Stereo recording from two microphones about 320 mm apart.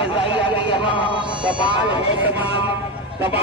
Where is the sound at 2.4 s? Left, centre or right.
Centre.